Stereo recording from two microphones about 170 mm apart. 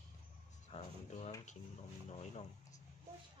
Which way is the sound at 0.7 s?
40° left (ahead or behind).